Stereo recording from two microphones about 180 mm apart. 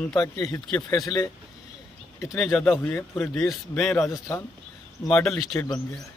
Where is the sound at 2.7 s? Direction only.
10° left (ahead or behind).